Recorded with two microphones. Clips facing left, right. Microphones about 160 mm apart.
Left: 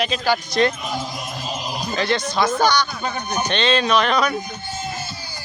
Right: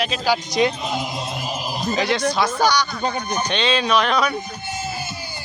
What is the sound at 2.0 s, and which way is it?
A man's voice, 10° right (ahead or behind).